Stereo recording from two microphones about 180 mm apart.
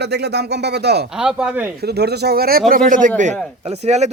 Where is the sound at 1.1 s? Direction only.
5° right (ahead or behind).